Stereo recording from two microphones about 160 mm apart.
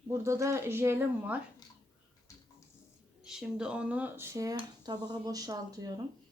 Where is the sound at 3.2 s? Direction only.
5° right (ahead or behind); by 5.9 s 25° right (ahead or behind).